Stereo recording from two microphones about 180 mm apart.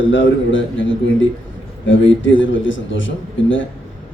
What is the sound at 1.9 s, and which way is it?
A man's voice, 90° left.